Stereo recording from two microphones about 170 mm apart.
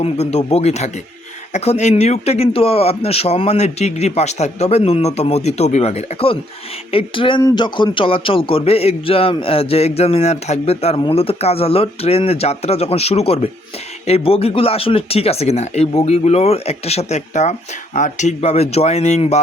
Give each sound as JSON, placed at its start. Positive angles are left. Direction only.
{"t": 0.0, "sound": "speech", "side_deg": 40}